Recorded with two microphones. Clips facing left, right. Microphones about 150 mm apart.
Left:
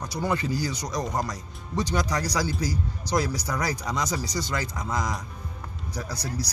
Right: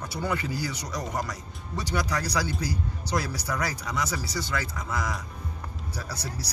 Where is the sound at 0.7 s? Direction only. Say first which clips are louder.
Left 3 dB; 15° left (ahead or behind).